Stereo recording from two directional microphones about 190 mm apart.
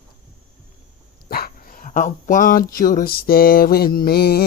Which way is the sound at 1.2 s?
50° left (ahead or behind).